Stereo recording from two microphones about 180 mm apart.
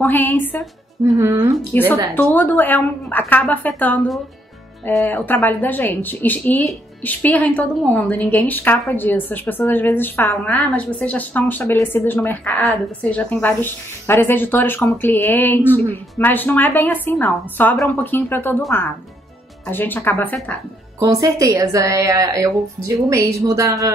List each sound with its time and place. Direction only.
0.0 s speech: 10° left (ahead or behind)
1.1 s speech: 20° right (ahead or behind)
1.7 s speech: 10° left (ahead or behind)
19.6 s speech: 10° left (ahead or behind)
21.0 s speech: 20° right (ahead or behind)